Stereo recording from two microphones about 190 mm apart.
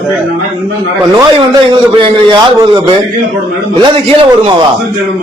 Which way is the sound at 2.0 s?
25° right (ahead or behind).